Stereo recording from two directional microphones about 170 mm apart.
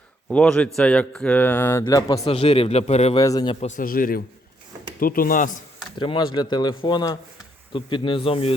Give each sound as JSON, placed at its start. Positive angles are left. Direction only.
{"t": 0.3, "sound": "speech", "side_deg": 5}
{"t": 2.2, "sound": "a man's voice", "side_deg": 35}
{"t": 3.2, "sound": "speech", "side_deg": 20}
{"t": 3.8, "sound": "speech", "side_deg": 55}
{"t": 6.0, "sound": "speech", "side_deg": 30}